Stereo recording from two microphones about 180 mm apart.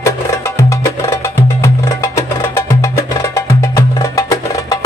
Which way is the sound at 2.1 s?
15° left (ahead or behind).